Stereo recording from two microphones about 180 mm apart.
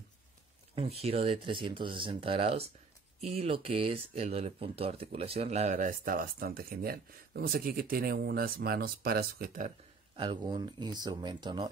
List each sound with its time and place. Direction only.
0.7 s speech: 35° right (ahead or behind); by 9.7 s 50° right (ahead or behind)
10.1 s speech: 25° right (ahead or behind)